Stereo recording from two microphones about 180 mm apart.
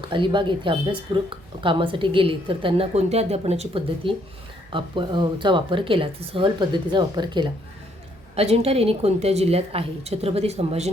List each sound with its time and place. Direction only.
0.1 s a woman's voice: 25° right (ahead or behind)